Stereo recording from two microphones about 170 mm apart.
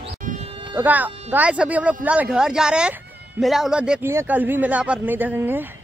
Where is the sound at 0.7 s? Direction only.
10° right (ahead or behind).